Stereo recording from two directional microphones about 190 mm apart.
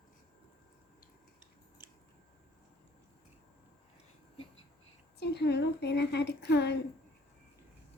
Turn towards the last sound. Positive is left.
turn(degrees=65)  # may be behind; listen again after turning